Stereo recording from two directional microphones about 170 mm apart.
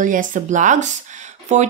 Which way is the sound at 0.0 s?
50° right (ahead or behind).